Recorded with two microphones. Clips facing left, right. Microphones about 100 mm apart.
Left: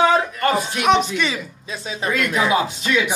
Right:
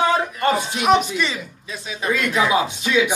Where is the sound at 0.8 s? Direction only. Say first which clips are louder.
Even; 5° right (ahead or behind).